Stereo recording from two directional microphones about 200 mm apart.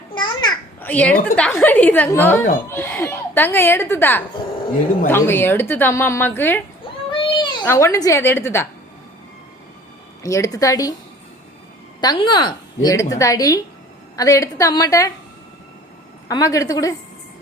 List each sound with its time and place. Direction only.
0.1 s babbling: 25° left (ahead or behind)
0.8 s a woman's voice: 5° left (ahead or behind)
7.1 s children playing: 25° left (ahead or behind)
7.6 s a woman's voice: 15° left (ahead or behind)
10.2 s a woman's voice: 15° left (ahead or behind)
11.9 s a woman's voice: 25° left (ahead or behind)
16.3 s a woman's voice: 15° left (ahead or behind)